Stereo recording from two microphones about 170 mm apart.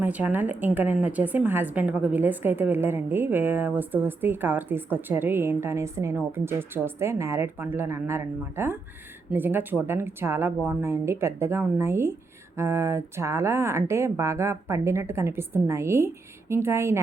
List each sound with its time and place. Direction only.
0.0 s a woman's voice: 10° right (ahead or behind)